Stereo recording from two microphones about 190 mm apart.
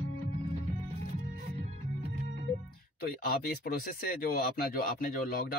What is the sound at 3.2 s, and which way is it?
Speech, 50° left (ahead or behind).